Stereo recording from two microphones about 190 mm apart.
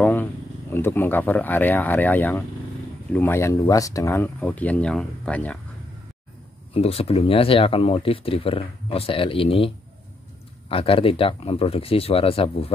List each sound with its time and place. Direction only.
0.0 s speech: 10° left (ahead or behind)
6.7 s speech: 30° left (ahead or behind)
10.7 s speech: 30° left (ahead or behind)